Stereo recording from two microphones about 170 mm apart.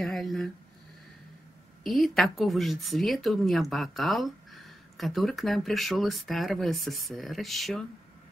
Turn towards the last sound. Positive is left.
turn(degrees=0)  # may be behind; listen again after turning